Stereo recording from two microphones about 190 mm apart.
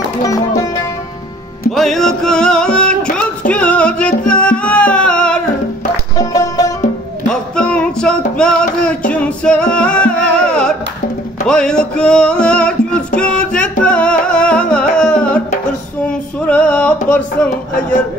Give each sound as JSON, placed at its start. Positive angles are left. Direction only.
{"t": 0.2, "sound": "music", "side_deg": 20}
{"t": 1.7, "sound": "music", "side_deg": 0}
{"t": 6.3, "sound": "music", "side_deg": 20}
{"t": 7.2, "sound": "music", "side_deg": 5}
{"t": 16.4, "sound": "a sound", "side_deg": 5}